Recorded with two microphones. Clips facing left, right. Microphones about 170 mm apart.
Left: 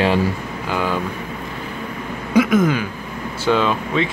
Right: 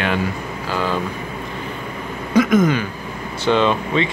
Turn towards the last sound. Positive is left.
turn(degrees=5)  # may be behind; listen again after turning